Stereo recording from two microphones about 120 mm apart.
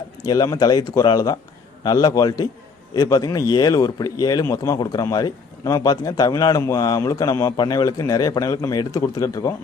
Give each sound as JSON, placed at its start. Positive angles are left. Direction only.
{"t": 0.3, "sound": "a man's voice", "side_deg": 30}